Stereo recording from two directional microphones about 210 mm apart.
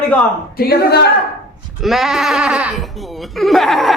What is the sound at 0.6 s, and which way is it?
Speech, 50° left (ahead or behind).